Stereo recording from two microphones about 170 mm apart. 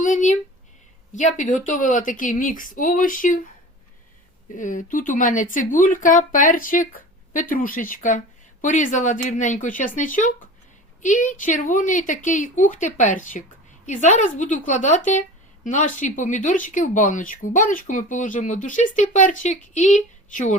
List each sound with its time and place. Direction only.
0.0 s speech: 45° left (ahead or behind)
4.5 s speech: 50° left (ahead or behind)